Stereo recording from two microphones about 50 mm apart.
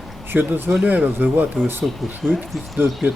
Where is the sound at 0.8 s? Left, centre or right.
Right.